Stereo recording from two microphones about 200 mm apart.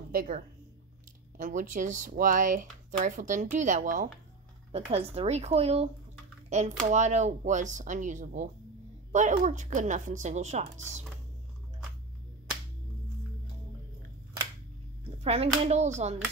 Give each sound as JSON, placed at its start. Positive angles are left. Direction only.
{"t": 0.1, "sound": "speech", "side_deg": -45}
{"t": 1.4, "sound": "speech", "side_deg": -40}
{"t": 4.7, "sound": "speech", "side_deg": -30}
{"t": 15.2, "sound": "speech", "side_deg": -30}